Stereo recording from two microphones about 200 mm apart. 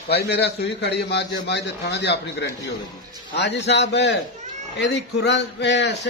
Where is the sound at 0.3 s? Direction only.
55° left (ahead or behind).